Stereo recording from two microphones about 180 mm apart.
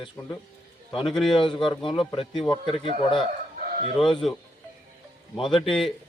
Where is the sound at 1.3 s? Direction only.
25° left (ahead or behind).